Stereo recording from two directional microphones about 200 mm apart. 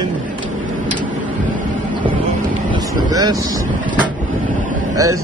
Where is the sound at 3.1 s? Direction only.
20° right (ahead or behind).